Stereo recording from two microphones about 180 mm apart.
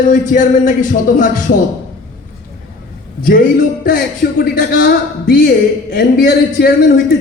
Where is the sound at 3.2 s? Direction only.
50° left (ahead or behind).